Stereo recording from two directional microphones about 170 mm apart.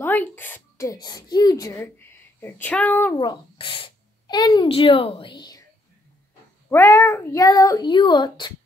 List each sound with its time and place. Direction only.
0.0 s speech: 10° left (ahead or behind)
3.2 s speech: 25° left (ahead or behind)
6.7 s a child's voice: 15° left (ahead or behind)